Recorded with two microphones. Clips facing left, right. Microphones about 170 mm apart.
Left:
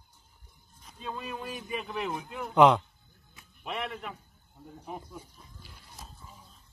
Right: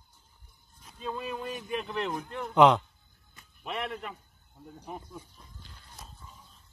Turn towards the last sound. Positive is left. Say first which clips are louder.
# left 1 dB
turn(degrees=5)  # may be behind; listen again after turning